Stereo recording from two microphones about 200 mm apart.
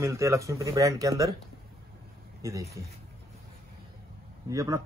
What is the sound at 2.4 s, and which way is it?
Speech, 15° right (ahead or behind).